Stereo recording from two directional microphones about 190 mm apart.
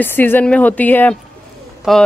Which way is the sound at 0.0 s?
10° left (ahead or behind).